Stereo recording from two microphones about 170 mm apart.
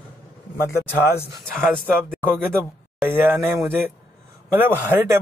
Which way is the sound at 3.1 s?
10° right (ahead or behind).